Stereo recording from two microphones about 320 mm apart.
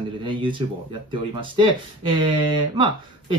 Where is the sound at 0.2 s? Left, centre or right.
Centre.